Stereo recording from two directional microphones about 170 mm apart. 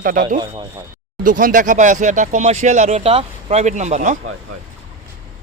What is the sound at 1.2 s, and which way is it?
Speech, 50° right (ahead or behind).